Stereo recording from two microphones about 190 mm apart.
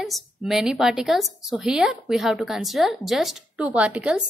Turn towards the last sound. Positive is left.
turn(degrees=-5)  # may be behind; listen again after turning